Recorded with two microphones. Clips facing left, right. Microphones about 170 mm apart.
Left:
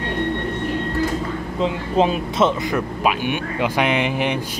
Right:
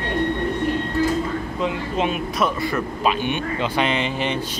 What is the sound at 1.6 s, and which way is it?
Speech, 30° left (ahead or behind).